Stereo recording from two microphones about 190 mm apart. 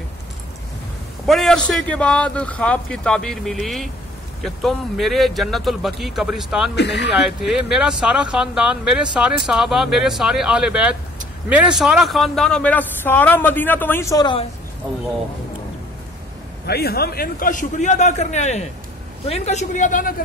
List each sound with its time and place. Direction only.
1.2 s a man's voice: centre (ahead or behind)
6.7 s speech: 65° left (ahead or behind)
7.2 s a man's voice: 5° right (ahead or behind); by 14.4 s 20° left (ahead or behind)
16.6 s a man's voice: 55° left (ahead or behind)